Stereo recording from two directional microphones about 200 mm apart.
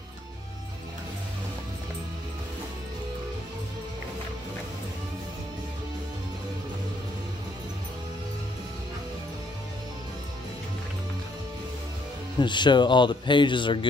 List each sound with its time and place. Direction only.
12.4 s speech: 25° left (ahead or behind)